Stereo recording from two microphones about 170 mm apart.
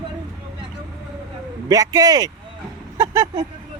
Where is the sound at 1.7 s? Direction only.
20° right (ahead or behind).